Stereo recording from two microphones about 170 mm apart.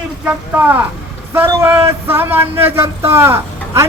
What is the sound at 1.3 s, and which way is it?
Speech, 15° right (ahead or behind).